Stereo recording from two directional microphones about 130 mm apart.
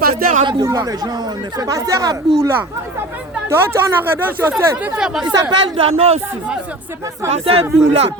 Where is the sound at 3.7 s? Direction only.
15° right (ahead or behind).